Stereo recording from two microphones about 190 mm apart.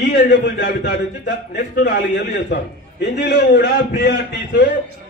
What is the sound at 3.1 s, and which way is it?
A man's voice, 65° left (ahead or behind).